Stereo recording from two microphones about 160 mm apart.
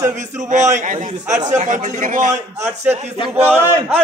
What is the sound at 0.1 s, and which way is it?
A man's voice, 50° right (ahead or behind).